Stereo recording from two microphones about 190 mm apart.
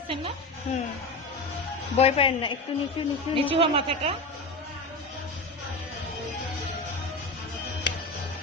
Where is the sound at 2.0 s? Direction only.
30° left (ahead or behind).